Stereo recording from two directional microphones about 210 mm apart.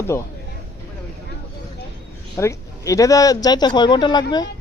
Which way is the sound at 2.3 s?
15° left (ahead or behind).